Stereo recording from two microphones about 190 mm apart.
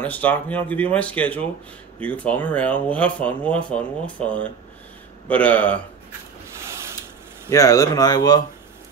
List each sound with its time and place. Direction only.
0.0 s speech: 10° left (ahead or behind)
7.4 s speech: 20° left (ahead or behind)